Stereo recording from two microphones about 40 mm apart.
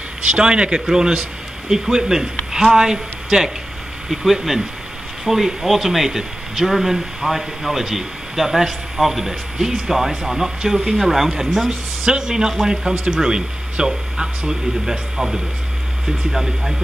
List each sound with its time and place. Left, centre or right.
0.2 s a man's voice: right; by 11.3 s centre
12.0 s a man's voice: right